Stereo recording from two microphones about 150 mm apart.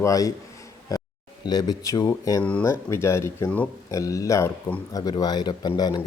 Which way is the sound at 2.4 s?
10° left (ahead or behind).